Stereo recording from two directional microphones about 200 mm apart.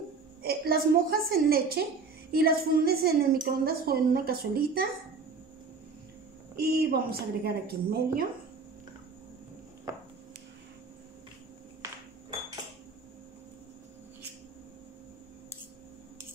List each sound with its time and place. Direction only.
0.4 s a woman's voice: 50° right (ahead or behind)
6.5 s a woman's voice: 50° right (ahead or behind)